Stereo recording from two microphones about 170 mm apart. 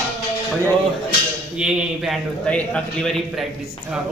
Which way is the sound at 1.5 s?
5° right (ahead or behind).